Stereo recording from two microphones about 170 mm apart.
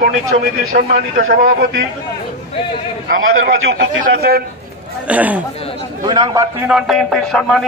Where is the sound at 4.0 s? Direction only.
65° right (ahead or behind).